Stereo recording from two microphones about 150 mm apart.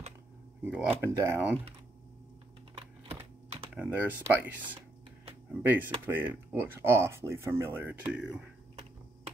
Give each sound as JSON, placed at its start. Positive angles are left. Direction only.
{"t": 0.7, "sound": "speech", "side_deg": -10}
{"t": 2.7, "sound": "computer keyboard", "side_deg": -40}
{"t": 3.7, "sound": "speech", "side_deg": -10}
{"t": 8.1, "sound": "speech", "side_deg": -5}